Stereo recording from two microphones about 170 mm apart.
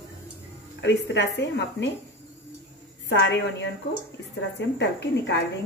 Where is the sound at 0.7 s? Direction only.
90° left.